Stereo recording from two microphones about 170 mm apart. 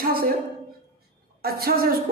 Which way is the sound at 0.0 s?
60° right (ahead or behind).